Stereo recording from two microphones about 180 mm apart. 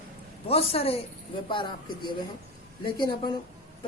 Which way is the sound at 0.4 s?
35° left (ahead or behind).